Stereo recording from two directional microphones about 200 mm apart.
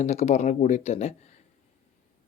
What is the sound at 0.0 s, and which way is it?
Speech, 35° left (ahead or behind).